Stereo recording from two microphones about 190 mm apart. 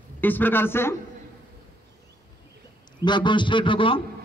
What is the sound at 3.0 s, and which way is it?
Speech, 25° left (ahead or behind).